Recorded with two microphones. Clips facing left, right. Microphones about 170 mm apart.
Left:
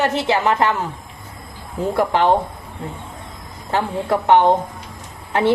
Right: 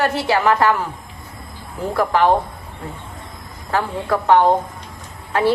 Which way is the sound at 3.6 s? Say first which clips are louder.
Left 1 dB; 20° left (ahead or behind).